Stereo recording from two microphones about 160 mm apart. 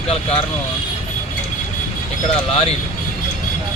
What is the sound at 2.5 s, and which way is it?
Speech, 40° left (ahead or behind).